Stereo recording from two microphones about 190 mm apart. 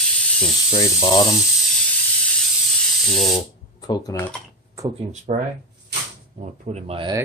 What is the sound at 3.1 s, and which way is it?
Speech, centre (ahead or behind).